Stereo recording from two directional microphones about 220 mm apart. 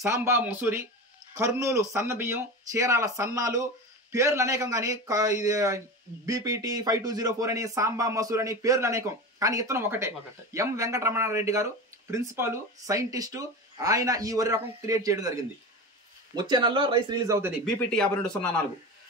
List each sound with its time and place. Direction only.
0.0 s a man's voice: 10° right (ahead or behind)
17.6 s speech: 5° left (ahead or behind)